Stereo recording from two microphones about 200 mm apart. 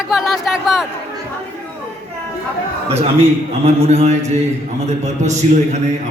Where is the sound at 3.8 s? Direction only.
35° right (ahead or behind).